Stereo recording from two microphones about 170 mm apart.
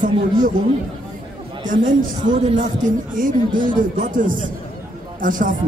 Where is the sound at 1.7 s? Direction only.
50° right (ahead or behind).